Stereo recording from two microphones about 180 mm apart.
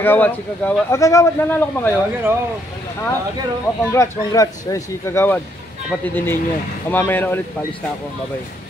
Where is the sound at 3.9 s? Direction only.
20° left (ahead or behind).